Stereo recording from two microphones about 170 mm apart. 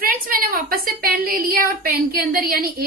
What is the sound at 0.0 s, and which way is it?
A woman's voice, 55° right (ahead or behind).